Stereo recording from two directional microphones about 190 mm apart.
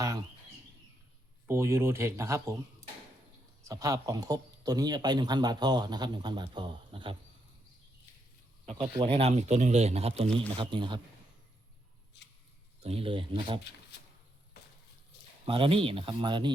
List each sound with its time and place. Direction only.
1.5 s speech: 15° right (ahead or behind)
3.6 s speech: 15° right (ahead or behind)
8.6 s speech: 30° right (ahead or behind)
12.8 s speech: 30° right (ahead or behind)
15.4 s speech: 30° right (ahead or behind)